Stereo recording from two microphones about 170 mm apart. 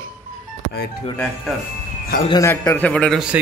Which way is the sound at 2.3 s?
15° left (ahead or behind).